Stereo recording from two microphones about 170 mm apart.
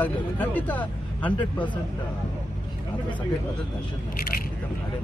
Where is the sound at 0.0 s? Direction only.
10° left (ahead or behind).